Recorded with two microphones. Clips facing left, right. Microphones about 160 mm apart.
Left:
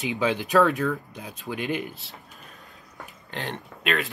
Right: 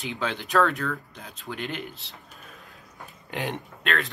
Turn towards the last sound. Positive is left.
turn(degrees=0)  # may be behind; listen again after turning